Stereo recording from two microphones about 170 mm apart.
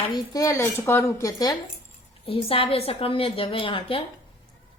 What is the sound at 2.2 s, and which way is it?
A woman's voice, 35° left (ahead or behind).